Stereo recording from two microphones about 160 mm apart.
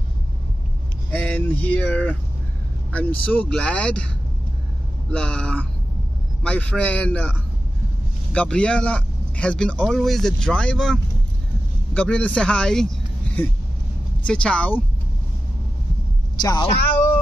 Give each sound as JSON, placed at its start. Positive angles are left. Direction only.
{"t": 1.1, "sound": "speech", "side_deg": 10}
{"t": 5.1, "sound": "a man's voice", "side_deg": 5}
{"t": 14.2, "sound": "speech", "side_deg": 5}
{"t": 16.3, "sound": "speech", "side_deg": 25}